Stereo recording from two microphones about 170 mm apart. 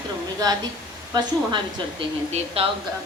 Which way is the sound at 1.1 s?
25° right (ahead or behind).